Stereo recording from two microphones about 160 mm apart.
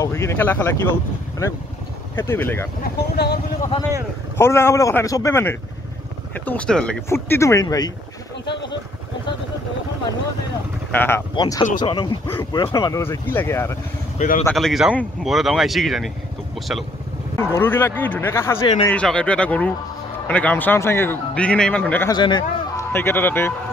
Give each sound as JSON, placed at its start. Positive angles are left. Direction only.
{"t": 0.0, "sound": "speech", "side_deg": 15}
{"t": 2.1, "sound": "a man's voice", "side_deg": 15}
{"t": 2.8, "sound": "speech", "side_deg": 90}
{"t": 4.4, "sound": "a man's voice", "side_deg": 15}
{"t": 7.1, "sound": "speech", "side_deg": 15}
{"t": 10.9, "sound": "speech", "side_deg": 10}
{"t": 12.6, "sound": "a man's voice", "side_deg": 20}
{"t": 14.1, "sound": "speech", "side_deg": 55}
{"t": 14.5, "sound": "speech", "side_deg": 0}
{"t": 17.4, "sound": "a man's voice", "side_deg": 15}
{"t": 18.6, "sound": "speech", "side_deg": 35}
{"t": 18.9, "sound": "a man's voice", "side_deg": 5}
{"t": 22.1, "sound": "speech", "side_deg": 25}
{"t": 22.9, "sound": "a man's voice", "side_deg": 15}